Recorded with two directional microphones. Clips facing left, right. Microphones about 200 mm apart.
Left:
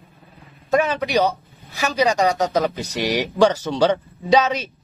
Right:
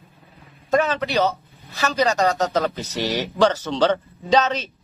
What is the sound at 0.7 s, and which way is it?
Speech, 10° left (ahead or behind).